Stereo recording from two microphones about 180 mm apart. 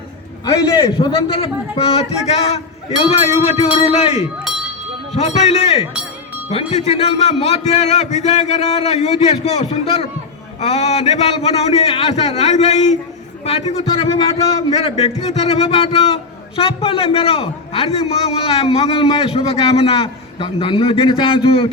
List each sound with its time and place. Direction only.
0.4 s a man's voice: 25° left (ahead or behind)